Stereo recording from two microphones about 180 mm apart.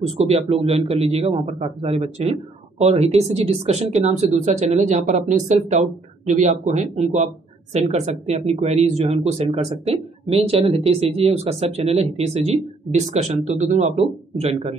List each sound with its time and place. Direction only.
0.0 s speech: 35° right (ahead or behind)